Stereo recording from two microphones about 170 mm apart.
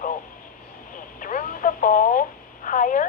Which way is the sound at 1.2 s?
50° left (ahead or behind).